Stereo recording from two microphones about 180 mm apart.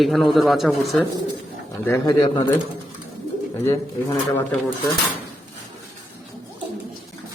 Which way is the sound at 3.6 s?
15° left (ahead or behind).